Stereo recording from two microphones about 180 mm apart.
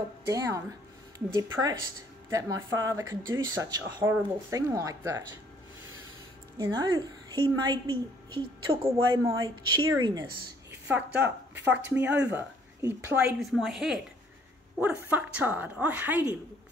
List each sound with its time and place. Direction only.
0.3 s a woman's voice: 20° right (ahead or behind)
6.6 s speech: 20° right (ahead or behind)
10.9 s a woman's voice: 10° right (ahead or behind)